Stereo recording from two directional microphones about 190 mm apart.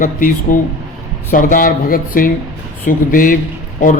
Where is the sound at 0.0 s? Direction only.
45° left (ahead or behind).